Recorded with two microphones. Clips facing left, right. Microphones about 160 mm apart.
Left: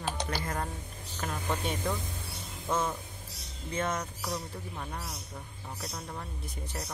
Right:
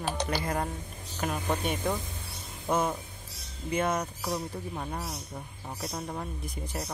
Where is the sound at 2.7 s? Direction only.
15° right (ahead or behind).